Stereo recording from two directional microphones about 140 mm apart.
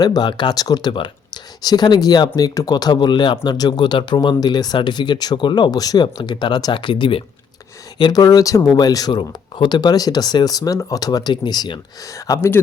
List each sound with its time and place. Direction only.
0.0 s speech: 30° left (ahead or behind)